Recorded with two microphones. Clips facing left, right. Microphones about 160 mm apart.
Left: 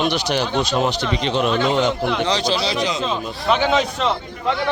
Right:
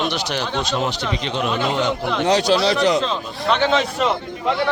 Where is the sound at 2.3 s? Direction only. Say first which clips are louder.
Right 4 dB; 60° right (ahead or behind).